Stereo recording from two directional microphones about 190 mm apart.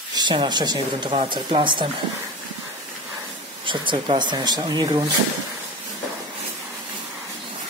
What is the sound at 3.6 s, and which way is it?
Speech, 25° right (ahead or behind).